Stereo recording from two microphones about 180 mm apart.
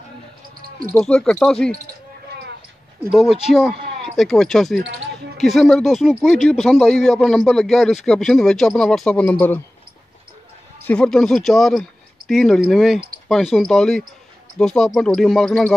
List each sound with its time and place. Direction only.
0.9 s speech: 5° left (ahead or behind)
3.1 s speech: centre (ahead or behind)
4.7 s basketball bounce: 65° right (ahead or behind)
5.4 s speech: centre (ahead or behind)
10.9 s speech: 5° left (ahead or behind)